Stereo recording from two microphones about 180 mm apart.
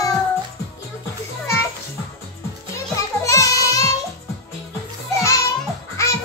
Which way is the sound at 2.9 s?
15° left (ahead or behind).